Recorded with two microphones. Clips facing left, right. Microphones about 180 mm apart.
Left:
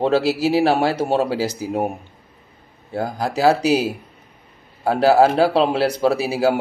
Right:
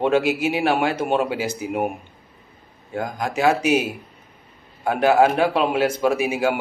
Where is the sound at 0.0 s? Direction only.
35° left (ahead or behind).